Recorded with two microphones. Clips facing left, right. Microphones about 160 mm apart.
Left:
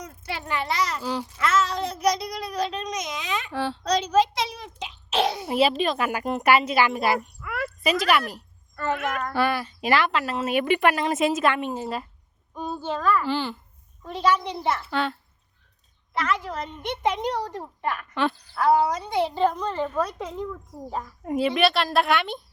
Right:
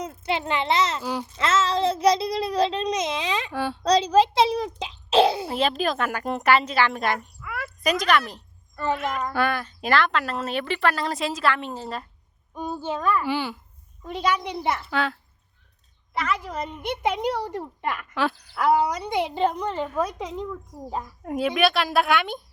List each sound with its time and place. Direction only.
0.0 s a child's voice: 25° right (ahead or behind)
3.5 s a woman's voice: 10° right (ahead or behind)
3.8 s a sound: 30° right (ahead or behind)
5.5 s speech: 5° left (ahead or behind)
9.3 s speech: 5° left (ahead or behind)
12.5 s a woman's voice: 10° right (ahead or behind)
14.9 s a woman's voice: centre (ahead or behind)
18.6 s a woman's voice: 15° right (ahead or behind)
21.2 s a woman's voice: centre (ahead or behind)